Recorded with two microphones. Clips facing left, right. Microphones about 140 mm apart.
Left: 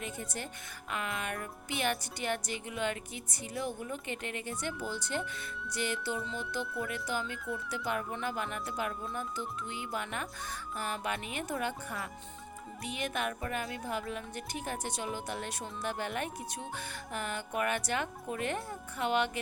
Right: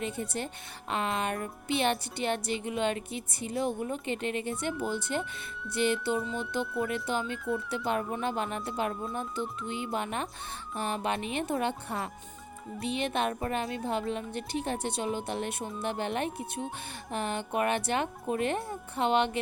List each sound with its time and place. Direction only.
0.0 s speech: 25° right (ahead or behind)